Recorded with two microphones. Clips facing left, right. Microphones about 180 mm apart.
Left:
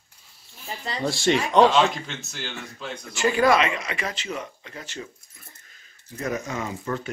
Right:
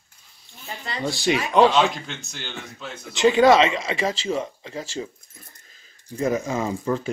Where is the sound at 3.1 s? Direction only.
20° right (ahead or behind).